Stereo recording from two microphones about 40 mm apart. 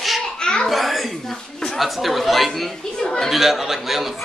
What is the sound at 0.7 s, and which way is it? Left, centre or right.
Chatter, centre.